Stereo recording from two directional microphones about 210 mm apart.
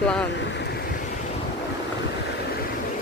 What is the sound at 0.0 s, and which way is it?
Vehicle, 5° left (ahead or behind).